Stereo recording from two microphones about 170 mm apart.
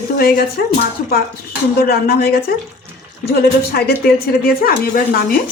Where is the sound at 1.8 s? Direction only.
65° left (ahead or behind).